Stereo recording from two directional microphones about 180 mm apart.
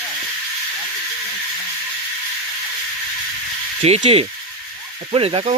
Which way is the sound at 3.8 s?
35° right (ahead or behind).